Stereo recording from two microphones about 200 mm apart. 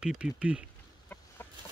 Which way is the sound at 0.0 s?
5° right (ahead or behind).